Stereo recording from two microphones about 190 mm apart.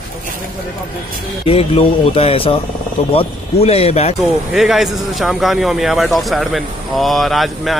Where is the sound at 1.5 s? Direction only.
30° left (ahead or behind).